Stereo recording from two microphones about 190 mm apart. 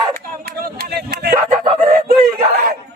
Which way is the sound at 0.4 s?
55° right (ahead or behind).